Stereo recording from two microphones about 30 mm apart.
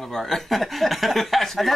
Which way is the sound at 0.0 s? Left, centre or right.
Centre.